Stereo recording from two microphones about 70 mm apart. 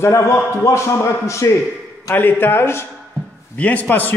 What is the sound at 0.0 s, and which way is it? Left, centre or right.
A man's voice, left.